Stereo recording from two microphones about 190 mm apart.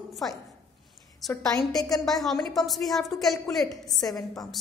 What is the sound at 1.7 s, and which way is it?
Speech, 20° left (ahead or behind).